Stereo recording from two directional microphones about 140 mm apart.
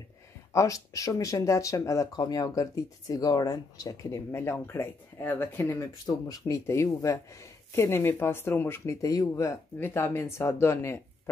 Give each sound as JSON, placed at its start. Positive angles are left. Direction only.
{"t": 0.5, "sound": "speech", "side_deg": 20}
{"t": 6.0, "sound": "speech", "side_deg": 25}